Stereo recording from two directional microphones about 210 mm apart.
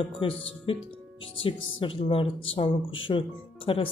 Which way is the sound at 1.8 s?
25° left (ahead or behind).